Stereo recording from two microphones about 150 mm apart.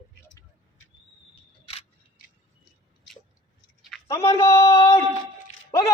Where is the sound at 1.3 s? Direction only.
40° left (ahead or behind).